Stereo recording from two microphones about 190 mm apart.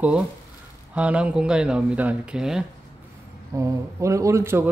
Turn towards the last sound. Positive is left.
turn(degrees=-15)  # may be behind; listen again after turning